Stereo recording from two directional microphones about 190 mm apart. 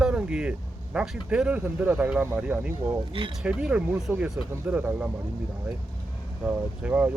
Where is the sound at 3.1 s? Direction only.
25° right (ahead or behind).